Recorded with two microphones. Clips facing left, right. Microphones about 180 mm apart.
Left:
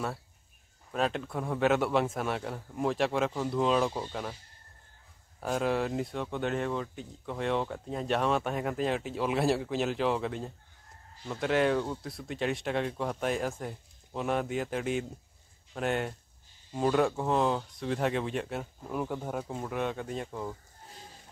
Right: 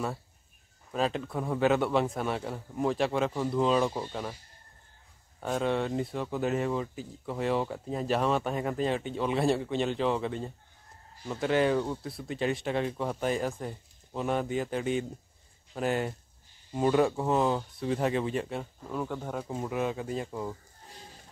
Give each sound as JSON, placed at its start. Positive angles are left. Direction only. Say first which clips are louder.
{"t": 0.9, "sound": "speech", "louder": "right 1 dB", "side_deg": 0}
{"t": 5.4, "sound": "speech", "louder": "even", "side_deg": 0}